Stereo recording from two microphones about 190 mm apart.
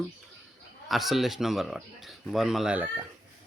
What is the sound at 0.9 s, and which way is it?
Speech, centre (ahead or behind).